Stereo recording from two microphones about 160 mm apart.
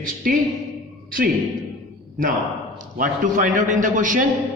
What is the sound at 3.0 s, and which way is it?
A man's voice, 55° right (ahead or behind).